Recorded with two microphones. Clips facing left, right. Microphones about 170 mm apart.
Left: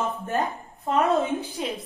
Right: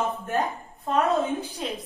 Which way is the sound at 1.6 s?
5° left (ahead or behind).